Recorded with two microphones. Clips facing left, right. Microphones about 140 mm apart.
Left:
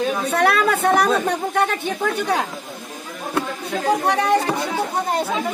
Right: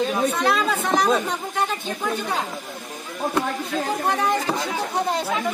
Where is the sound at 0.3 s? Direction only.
65° left (ahead or behind).